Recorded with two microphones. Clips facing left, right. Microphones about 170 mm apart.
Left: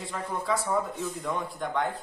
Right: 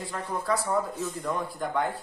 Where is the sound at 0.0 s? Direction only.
Centre (ahead or behind).